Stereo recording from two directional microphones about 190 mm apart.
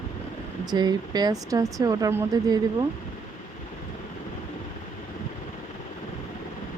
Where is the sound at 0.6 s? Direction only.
20° right (ahead or behind).